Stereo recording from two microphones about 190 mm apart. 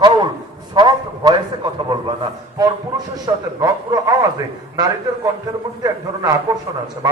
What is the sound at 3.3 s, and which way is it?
A man's voice, 20° right (ahead or behind).